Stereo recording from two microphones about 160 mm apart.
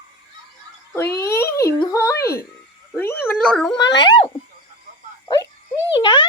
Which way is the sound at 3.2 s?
5° left (ahead or behind).